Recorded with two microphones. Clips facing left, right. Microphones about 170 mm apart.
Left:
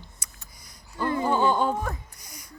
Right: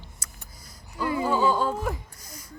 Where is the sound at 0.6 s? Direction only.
5° right (ahead or behind).